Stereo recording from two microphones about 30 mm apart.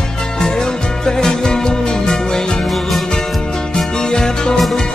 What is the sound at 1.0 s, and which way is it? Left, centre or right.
Music, left.